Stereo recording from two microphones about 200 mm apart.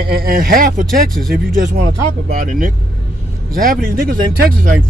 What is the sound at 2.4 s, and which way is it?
Speech, 45° right (ahead or behind).